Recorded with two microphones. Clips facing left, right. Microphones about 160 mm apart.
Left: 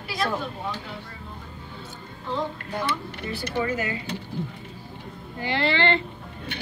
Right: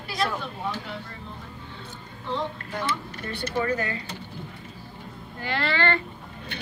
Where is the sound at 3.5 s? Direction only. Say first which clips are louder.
Even; 15° left (ahead or behind).